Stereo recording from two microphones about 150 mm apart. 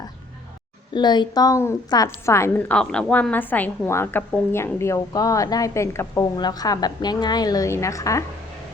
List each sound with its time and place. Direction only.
0.9 s a woman's voice: 30° left (ahead or behind)